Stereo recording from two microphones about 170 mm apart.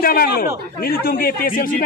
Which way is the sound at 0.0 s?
60° left (ahead or behind).